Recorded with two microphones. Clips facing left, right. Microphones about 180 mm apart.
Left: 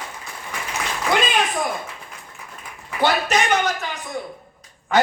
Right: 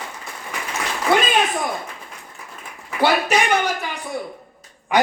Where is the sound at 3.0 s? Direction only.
10° right (ahead or behind).